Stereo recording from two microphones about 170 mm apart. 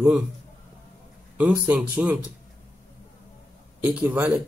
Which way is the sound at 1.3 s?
10° right (ahead or behind).